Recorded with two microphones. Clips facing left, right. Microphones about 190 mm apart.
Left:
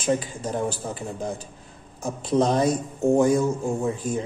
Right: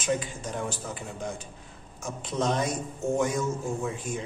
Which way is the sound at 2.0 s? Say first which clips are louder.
Left 7 dB; 35° left (ahead or behind).